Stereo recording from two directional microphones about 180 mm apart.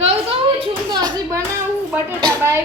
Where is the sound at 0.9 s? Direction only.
20° right (ahead or behind).